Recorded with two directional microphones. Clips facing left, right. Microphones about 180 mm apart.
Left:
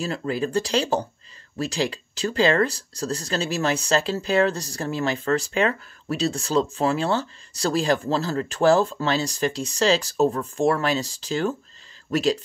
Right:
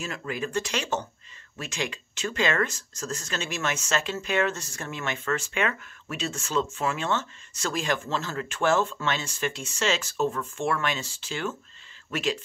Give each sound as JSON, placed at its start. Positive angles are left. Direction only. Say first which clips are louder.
{"t": 0.0, "sound": "speech", "louder": "left 6 dB", "side_deg": 35}